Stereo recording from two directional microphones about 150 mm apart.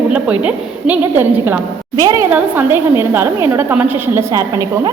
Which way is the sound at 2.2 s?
10° right (ahead or behind).